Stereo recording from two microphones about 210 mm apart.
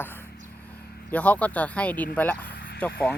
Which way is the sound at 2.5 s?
55° left (ahead or behind).